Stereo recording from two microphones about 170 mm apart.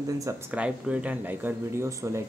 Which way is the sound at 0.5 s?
5° right (ahead or behind).